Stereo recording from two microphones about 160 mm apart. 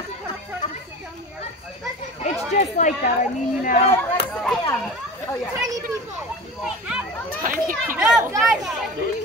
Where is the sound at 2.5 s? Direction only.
50° left (ahead or behind).